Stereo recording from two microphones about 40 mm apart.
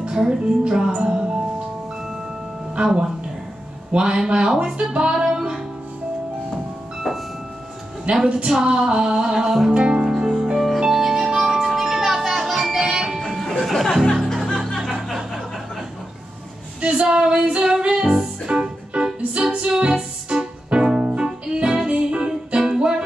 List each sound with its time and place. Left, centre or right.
0.0 s speech: centre
2.7 s a man's voice: right
8.0 s speech: right
8.5 s music: centre
9.8 s music: right
13.2 s music: centre
15.0 s a sound: centre
16.9 s music: right
22.6 s music: centre